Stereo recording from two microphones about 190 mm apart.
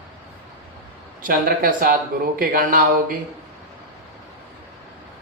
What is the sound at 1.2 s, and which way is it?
Speech, 50° right (ahead or behind).